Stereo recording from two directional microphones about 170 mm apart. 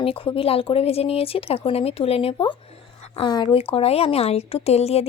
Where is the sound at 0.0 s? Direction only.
30° left (ahead or behind).